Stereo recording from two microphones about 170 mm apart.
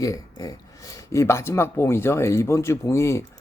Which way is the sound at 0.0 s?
20° left (ahead or behind).